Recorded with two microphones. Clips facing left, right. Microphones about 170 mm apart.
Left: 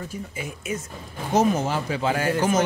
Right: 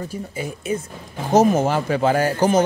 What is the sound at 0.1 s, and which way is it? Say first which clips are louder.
Speech: right 5 dB; 35° right (ahead or behind).